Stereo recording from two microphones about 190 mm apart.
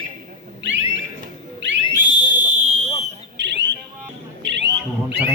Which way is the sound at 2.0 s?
40° right (ahead or behind).